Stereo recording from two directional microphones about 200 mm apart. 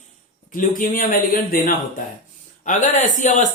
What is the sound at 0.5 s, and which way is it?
A man's voice, 40° left (ahead or behind).